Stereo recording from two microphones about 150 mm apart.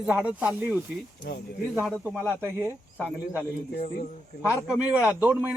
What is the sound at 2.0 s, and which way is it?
Speech, 10° right (ahead or behind).